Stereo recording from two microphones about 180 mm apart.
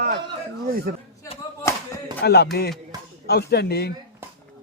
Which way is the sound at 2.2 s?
65° left (ahead or behind).